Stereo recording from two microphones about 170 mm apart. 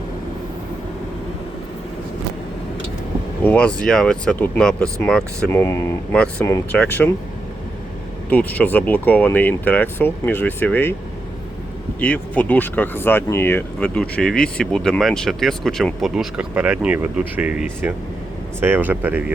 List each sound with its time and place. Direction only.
3.4 s speech: 10° left (ahead or behind)
5.5 s speech: 15° left (ahead or behind)
6.1 s speech: 5° left (ahead or behind)
8.3 s speech: 10° left (ahead or behind)
11.9 s speech: 10° left (ahead or behind); by 19.2 s 10° right (ahead or behind)